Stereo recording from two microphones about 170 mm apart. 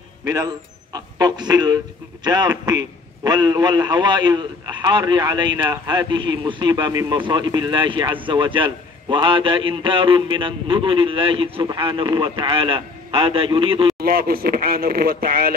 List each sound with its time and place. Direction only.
0.2 s a man's voice: 20° right (ahead or behind)
14.0 s speech: 60° right (ahead or behind)